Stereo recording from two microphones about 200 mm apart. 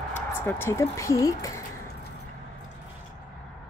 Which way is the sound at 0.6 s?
15° left (ahead or behind).